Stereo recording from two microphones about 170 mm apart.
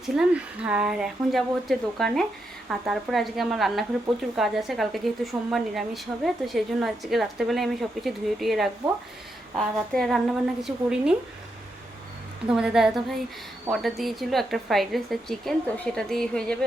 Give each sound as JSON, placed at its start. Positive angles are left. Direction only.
{"t": 0.0, "sound": "a woman's voice", "side_deg": -5}
{"t": 12.5, "sound": "a woman's voice", "side_deg": -5}